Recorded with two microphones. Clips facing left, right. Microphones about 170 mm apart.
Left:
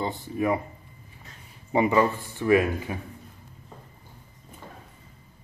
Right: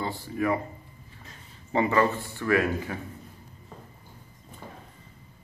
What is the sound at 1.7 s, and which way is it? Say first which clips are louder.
Speech: left 2 dB; 15° left (ahead or behind).